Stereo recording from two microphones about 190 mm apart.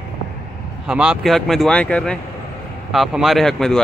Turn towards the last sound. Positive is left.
turn(degrees=0)  # may be behind; listen again after turning